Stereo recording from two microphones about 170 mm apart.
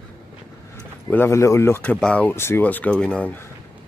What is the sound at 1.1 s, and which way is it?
Speech, 15° left (ahead or behind).